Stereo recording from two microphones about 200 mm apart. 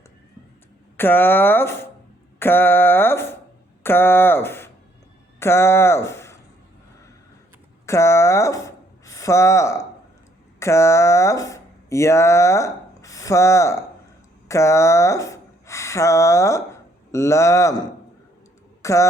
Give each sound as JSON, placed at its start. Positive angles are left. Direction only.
{"t": 0.9, "sound": "a sound", "side_deg": 10}
{"t": 5.4, "sound": "speech", "side_deg": 10}
{"t": 7.9, "sound": "speech", "side_deg": 15}